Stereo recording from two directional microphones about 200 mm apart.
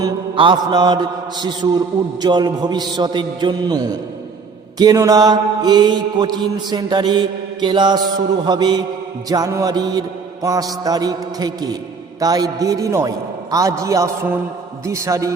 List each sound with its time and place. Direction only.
0.0 s mantra: 25° right (ahead or behind)
12.2 s a man's voice: 20° right (ahead or behind)